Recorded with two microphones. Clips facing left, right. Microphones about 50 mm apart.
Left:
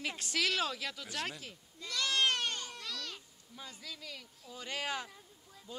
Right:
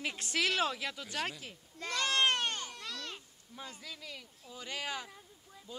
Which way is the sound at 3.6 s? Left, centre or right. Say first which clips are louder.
Right 1 dB; centre.